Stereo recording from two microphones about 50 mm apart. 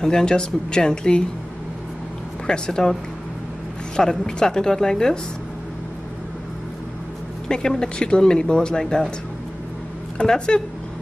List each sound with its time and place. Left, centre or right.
0.0 s speech: centre
2.4 s speech: centre
7.4 s speech: centre
10.1 s speech: centre